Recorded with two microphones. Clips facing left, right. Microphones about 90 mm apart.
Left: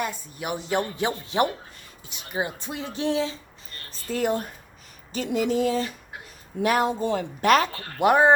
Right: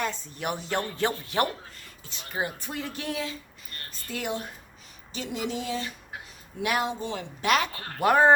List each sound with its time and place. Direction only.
0.0 s a woman's voice: 10° left (ahead or behind); by 3.3 s 25° left (ahead or behind)
4.1 s speech: 40° left (ahead or behind)
7.9 s speech: 20° left (ahead or behind)